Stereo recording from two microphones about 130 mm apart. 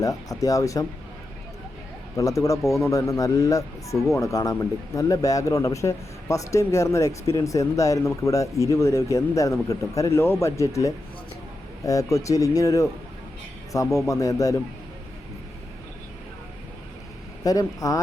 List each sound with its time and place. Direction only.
0.0 s a man's voice: 25° left (ahead or behind)
2.1 s a man's voice: 25° left (ahead or behind)
17.4 s a man's voice: 25° left (ahead or behind)